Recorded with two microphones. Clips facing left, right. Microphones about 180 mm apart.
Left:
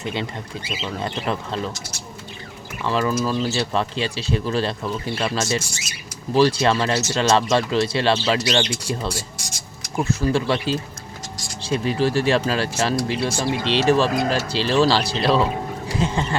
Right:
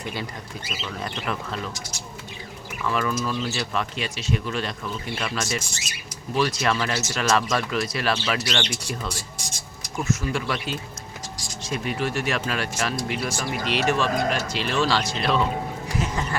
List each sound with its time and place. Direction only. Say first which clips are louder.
0.0 s speech: left 5 dB; 25° left (ahead or behind)
2.8 s speech: left 4 dB; 30° left (ahead or behind)
10.0 s speech: left 5 dB; 35° left (ahead or behind)